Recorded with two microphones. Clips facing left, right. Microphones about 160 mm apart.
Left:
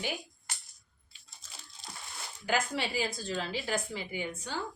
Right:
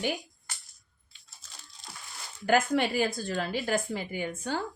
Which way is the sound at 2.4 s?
55° right (ahead or behind).